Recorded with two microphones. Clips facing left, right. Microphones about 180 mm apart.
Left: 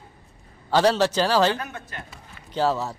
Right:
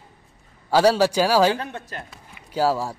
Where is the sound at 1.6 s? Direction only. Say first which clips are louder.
Right 3 dB; 30° right (ahead or behind).